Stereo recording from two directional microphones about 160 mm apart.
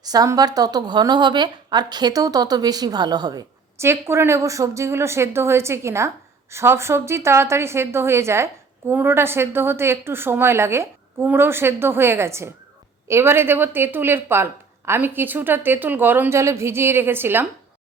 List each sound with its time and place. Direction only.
0.0 s a woman's voice: 25° right (ahead or behind)